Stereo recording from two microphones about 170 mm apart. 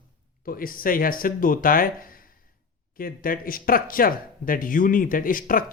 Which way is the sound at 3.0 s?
55° left (ahead or behind).